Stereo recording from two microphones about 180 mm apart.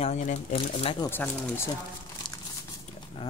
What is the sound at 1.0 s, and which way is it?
Speech, 10° left (ahead or behind).